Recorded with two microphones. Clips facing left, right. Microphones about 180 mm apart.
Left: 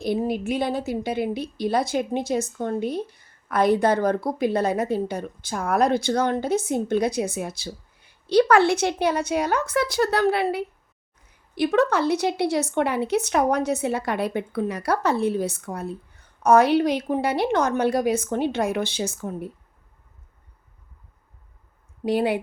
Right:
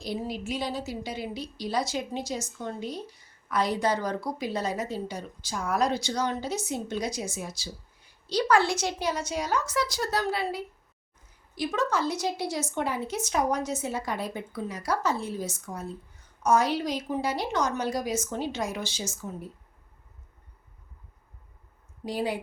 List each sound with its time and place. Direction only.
0.0 s a woman's voice: 55° left (ahead or behind)
22.0 s a woman's voice: 65° left (ahead or behind)